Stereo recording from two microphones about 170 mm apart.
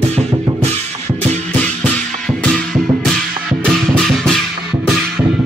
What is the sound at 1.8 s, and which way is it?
Music, 5° left (ahead or behind).